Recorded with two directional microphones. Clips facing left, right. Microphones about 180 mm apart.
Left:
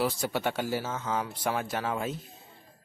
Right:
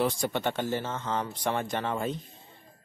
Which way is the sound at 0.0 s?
5° left (ahead or behind).